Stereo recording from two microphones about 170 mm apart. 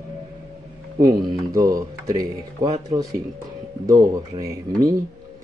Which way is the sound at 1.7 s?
20° right (ahead or behind).